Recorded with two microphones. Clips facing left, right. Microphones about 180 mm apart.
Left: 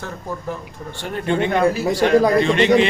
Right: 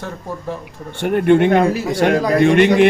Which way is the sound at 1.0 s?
60° right (ahead or behind).